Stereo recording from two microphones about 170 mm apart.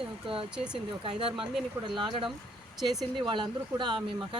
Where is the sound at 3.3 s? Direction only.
25° right (ahead or behind).